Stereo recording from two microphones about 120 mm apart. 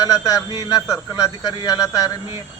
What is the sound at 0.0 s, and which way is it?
A man's voice, 30° left (ahead or behind).